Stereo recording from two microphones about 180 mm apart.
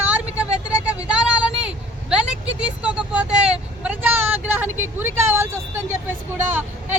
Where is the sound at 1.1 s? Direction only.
5° right (ahead or behind).